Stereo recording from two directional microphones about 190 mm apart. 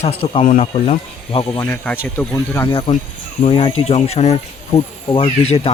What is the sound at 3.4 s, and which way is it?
Speech, 30° left (ahead or behind).